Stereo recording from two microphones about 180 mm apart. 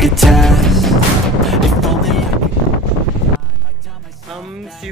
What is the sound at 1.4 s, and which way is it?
Music, centre (ahead or behind).